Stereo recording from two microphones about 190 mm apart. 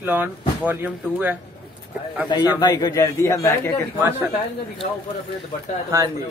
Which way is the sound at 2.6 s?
20° left (ahead or behind).